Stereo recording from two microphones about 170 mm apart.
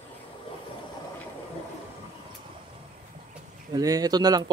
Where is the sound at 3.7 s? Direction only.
20° right (ahead or behind).